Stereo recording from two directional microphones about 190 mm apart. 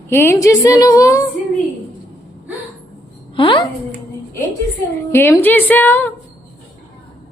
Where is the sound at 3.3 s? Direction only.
25° left (ahead or behind).